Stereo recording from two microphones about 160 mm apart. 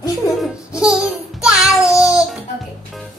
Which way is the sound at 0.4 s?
5° right (ahead or behind).